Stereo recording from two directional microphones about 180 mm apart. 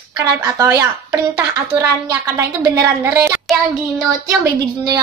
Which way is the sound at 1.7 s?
15° right (ahead or behind).